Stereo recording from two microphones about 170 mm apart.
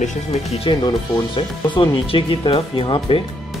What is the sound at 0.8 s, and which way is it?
Speech, 25° left (ahead or behind).